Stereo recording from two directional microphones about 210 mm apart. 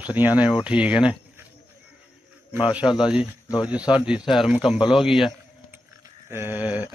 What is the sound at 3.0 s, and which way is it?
A man's voice, 5° right (ahead or behind).